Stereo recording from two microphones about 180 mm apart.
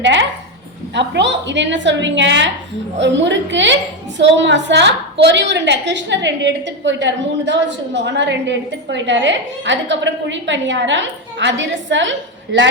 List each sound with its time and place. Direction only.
0.0 s a woman's voice: 90° right
0.9 s a woman's voice: 75° right (ahead or behind)